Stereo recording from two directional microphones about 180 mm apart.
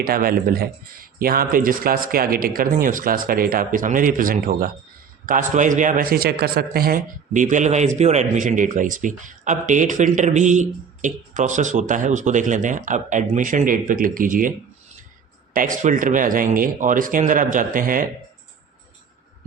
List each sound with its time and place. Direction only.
0.0 s a man's voice: 55° right (ahead or behind)
15.5 s a man's voice: 45° right (ahead or behind)